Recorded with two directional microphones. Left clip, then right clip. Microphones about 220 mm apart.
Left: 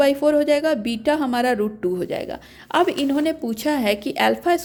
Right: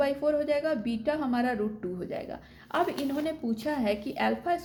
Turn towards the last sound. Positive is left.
turn(degrees=45)  # may be behind; listen again after turning